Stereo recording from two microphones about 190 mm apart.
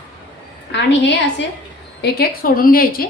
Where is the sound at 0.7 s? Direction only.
65° left (ahead or behind).